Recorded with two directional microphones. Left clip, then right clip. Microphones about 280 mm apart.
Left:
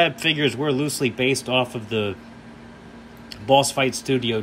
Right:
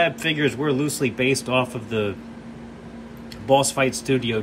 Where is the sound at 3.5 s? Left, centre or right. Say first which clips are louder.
Left 1 dB; centre.